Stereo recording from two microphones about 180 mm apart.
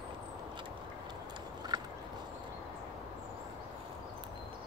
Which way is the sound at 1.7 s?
25° right (ahead or behind).